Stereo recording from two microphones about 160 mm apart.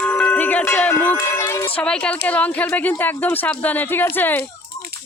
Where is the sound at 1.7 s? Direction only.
5° left (ahead or behind).